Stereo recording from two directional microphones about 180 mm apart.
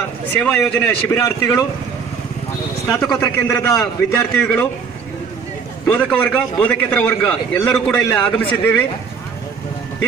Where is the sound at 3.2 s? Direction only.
15° left (ahead or behind).